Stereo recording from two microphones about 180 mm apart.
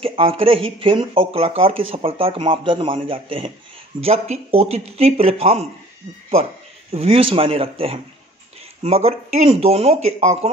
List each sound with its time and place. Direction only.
0.0 s a man's voice: 30° right (ahead or behind)
6.9 s speech: 30° right (ahead or behind)
8.8 s speech: 35° right (ahead or behind)